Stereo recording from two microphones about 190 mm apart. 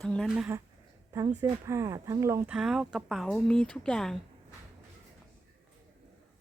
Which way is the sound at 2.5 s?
5° right (ahead or behind).